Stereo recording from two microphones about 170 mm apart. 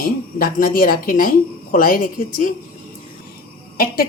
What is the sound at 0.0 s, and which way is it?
A woman's voice, 55° left (ahead or behind).